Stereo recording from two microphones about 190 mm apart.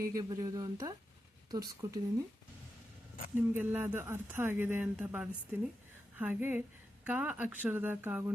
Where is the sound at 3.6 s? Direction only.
10° right (ahead or behind).